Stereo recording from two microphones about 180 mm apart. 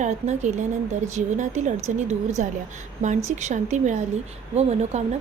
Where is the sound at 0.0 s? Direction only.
40° right (ahead or behind).